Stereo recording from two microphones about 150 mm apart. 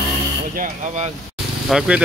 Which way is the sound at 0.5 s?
60° right (ahead or behind).